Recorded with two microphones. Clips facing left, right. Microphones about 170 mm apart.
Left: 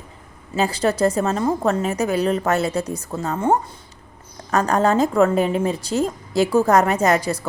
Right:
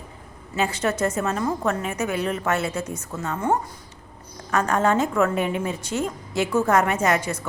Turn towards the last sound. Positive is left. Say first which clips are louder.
# left 4 dB
turn(degrees=35)  # may be behind; listen again after turning